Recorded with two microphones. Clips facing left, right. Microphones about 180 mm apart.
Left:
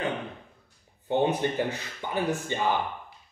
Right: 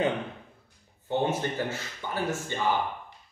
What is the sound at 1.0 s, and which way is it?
A man's voice, 15° left (ahead or behind).